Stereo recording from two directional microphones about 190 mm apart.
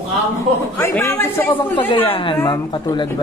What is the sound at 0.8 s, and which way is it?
Speech, 10° left (ahead or behind).